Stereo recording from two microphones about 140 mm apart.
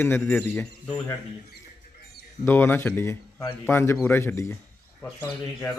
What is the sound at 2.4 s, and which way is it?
A man's voice, 15° left (ahead or behind).